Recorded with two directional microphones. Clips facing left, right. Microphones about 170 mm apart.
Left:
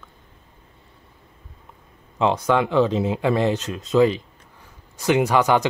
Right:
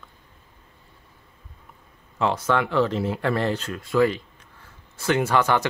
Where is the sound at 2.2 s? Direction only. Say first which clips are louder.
Left 3 dB; 15° left (ahead or behind).